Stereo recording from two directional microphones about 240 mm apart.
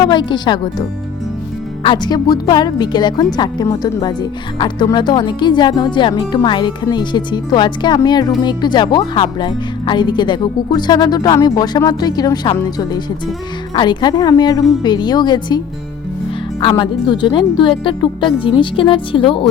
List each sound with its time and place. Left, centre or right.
0.0 s speech: centre